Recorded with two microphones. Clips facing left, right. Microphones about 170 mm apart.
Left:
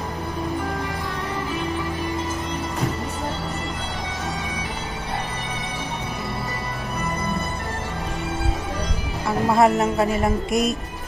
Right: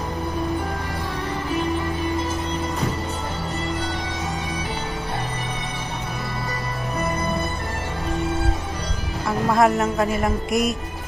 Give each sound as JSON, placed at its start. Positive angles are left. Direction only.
{"t": 9.5, "sound": "speech", "side_deg": 0}